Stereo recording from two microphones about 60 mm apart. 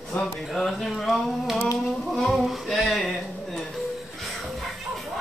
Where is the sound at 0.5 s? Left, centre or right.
Centre.